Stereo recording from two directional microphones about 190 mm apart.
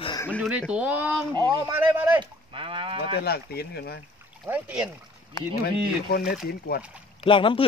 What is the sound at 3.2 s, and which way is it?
Speech, 55° left (ahead or behind).